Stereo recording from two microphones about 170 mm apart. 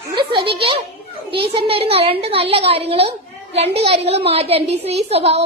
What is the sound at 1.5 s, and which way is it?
A woman's voice, 35° right (ahead or behind).